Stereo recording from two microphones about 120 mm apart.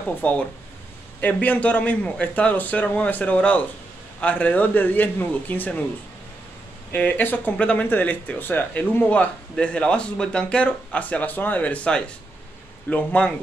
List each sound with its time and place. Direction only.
0.2 s speech: 10° left (ahead or behind)
6.9 s speech: 15° left (ahead or behind)